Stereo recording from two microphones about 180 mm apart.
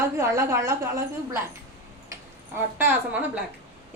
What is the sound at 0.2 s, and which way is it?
A woman's voice, 15° right (ahead or behind).